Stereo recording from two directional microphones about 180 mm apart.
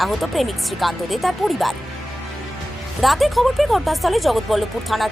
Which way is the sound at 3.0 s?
Centre (ahead or behind).